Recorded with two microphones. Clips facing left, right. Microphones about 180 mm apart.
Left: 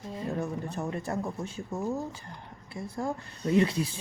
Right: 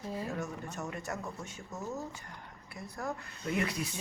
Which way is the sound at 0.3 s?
30° left (ahead or behind).